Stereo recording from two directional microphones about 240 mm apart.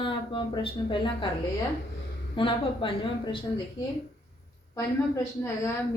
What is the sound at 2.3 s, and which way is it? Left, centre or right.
Speech, left.